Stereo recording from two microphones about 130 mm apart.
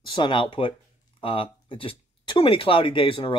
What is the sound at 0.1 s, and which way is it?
Speech, 40° left (ahead or behind).